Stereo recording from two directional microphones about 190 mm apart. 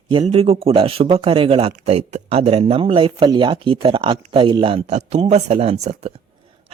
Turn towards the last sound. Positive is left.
turn(degrees=-35)  # may be behind; listen again after turning